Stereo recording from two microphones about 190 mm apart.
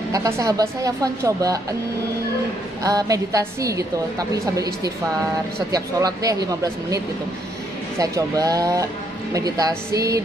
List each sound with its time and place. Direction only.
0.1 s speech: 20° right (ahead or behind)
2.8 s a woman's voice: 20° right (ahead or behind)
5.7 s speech: 20° right (ahead or behind)
8.0 s a woman's voice: 20° right (ahead or behind)